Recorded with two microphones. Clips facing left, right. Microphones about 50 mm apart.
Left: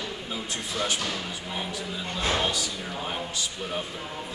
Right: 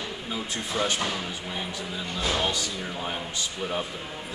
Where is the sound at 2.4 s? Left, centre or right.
Centre.